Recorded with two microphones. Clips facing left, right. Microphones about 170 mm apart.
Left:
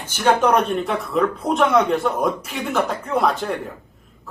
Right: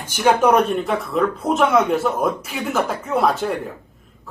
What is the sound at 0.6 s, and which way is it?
A man's voice, centre (ahead or behind).